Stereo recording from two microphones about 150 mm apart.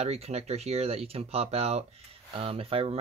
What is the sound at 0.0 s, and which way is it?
Speech, 45° right (ahead or behind).